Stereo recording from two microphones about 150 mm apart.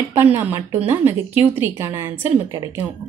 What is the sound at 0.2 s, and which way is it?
Speech, 15° right (ahead or behind).